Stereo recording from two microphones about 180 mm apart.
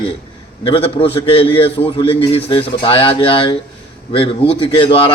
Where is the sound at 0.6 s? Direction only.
30° left (ahead or behind).